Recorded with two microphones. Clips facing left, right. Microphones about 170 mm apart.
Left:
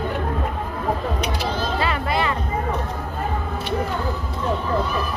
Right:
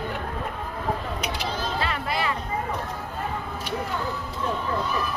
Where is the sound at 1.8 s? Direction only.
Centre (ahead or behind).